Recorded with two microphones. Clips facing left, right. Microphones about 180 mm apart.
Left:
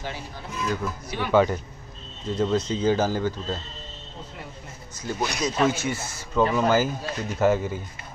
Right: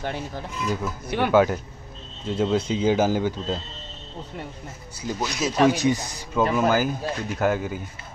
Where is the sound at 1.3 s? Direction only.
5° right (ahead or behind).